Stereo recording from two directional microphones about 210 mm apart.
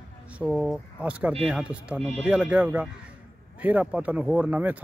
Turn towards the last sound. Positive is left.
turn(degrees=-10)  # may be behind; listen again after turning